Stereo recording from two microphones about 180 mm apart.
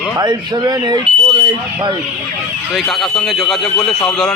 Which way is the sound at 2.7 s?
Centre (ahead or behind).